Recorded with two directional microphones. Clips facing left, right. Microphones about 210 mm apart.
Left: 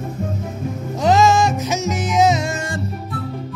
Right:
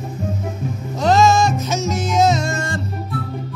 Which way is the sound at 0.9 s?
15° left (ahead or behind).